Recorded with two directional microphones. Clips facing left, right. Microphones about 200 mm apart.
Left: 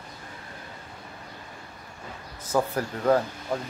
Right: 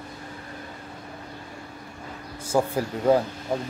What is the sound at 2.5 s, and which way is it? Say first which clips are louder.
Speech: right 2 dB; 15° right (ahead or behind).